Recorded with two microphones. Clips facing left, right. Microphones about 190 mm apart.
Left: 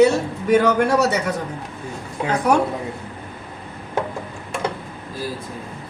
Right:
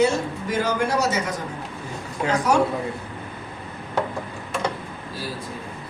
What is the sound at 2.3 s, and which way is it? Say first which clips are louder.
Speech: left 3 dB; 60° left (ahead or behind).